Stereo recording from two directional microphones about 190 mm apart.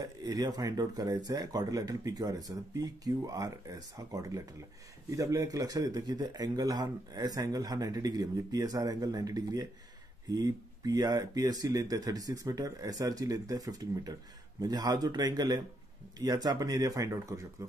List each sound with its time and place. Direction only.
0.0 s a man's voice: 20° right (ahead or behind)